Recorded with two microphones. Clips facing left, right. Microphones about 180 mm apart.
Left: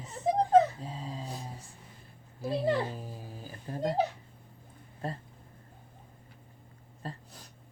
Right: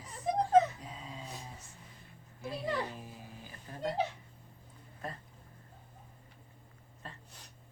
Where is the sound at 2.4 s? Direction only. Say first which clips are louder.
Left 7 dB; 30° left (ahead or behind).